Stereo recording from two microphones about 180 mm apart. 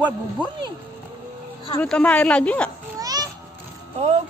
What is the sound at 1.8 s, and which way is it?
Speech, 5° left (ahead or behind).